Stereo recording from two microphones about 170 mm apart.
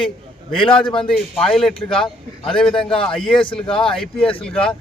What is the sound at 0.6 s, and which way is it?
Speech, 30° left (ahead or behind).